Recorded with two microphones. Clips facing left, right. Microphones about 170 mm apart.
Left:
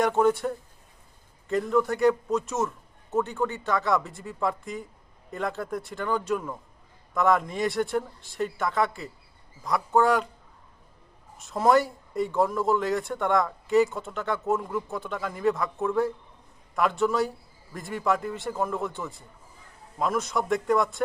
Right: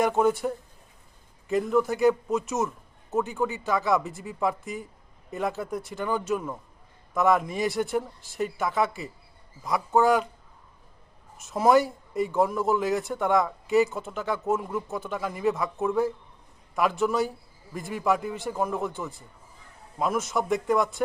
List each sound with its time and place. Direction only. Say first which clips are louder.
0.0 s a man's voice: even; centre (ahead or behind)
11.4 s speech: right 1 dB; centre (ahead or behind)